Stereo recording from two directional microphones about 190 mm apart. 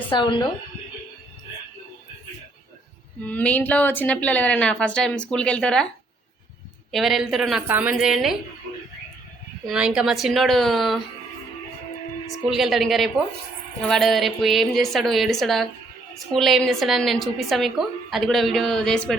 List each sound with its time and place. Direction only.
0.1 s a woman's voice: 25° left (ahead or behind)
3.2 s a woman's voice: 10° left (ahead or behind)
6.9 s a woman's voice: centre (ahead or behind)
9.6 s a woman's voice: 5° right (ahead or behind)
12.5 s a woman's voice: centre (ahead or behind)